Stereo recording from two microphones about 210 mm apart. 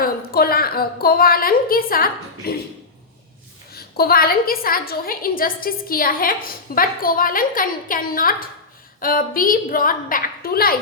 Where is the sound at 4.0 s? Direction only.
45° left (ahead or behind).